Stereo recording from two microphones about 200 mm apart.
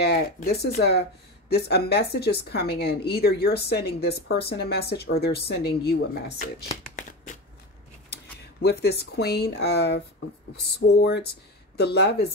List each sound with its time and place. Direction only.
0.0 s speech: 55° left (ahead or behind)
7.0 s a sound: 40° left (ahead or behind)
8.6 s speech: 55° left (ahead or behind)